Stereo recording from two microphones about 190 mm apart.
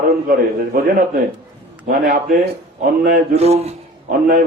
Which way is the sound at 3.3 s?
35° right (ahead or behind).